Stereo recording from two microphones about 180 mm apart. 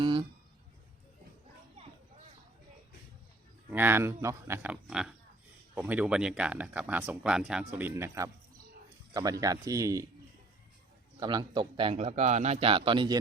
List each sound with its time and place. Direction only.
0.0 s a sound: 25° right (ahead or behind)
3.7 s speech: 10° right (ahead or behind)
9.4 s a man's voice: 20° right (ahead or behind)
11.2 s a man's voice: 25° right (ahead or behind)